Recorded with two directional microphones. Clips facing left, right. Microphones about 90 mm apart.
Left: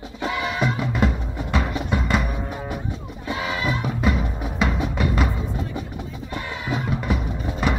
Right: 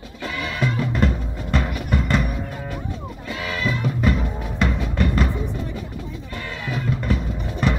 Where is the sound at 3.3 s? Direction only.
20° left (ahead or behind).